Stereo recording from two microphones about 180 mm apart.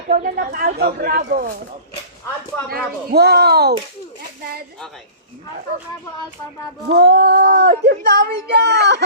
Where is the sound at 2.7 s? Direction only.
60° right (ahead or behind).